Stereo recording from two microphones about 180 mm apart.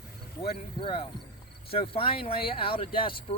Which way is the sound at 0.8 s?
30° left (ahead or behind).